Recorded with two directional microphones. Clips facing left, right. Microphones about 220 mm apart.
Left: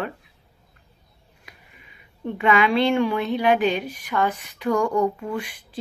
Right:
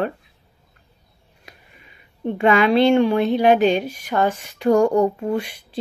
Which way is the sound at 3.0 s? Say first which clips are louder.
Right 5 dB; 30° right (ahead or behind).